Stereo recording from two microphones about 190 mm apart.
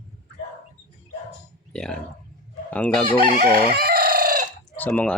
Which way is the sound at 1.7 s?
5° left (ahead or behind).